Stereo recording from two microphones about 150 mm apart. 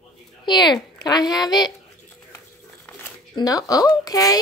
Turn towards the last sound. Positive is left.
turn(degrees=25)  # may be behind; listen again after turning